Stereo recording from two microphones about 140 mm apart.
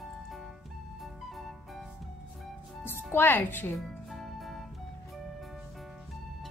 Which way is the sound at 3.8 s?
Centre (ahead or behind).